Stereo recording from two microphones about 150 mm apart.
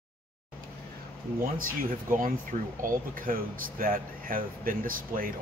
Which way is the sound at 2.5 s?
60° right (ahead or behind).